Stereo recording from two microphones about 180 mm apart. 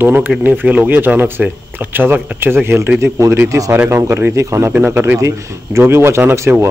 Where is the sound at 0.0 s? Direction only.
10° right (ahead or behind).